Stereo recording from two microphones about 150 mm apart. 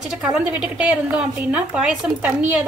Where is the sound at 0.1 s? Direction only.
5° right (ahead or behind).